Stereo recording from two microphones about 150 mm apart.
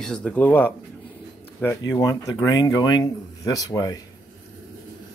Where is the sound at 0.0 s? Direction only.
5° left (ahead or behind); by 4.0 s 25° left (ahead or behind).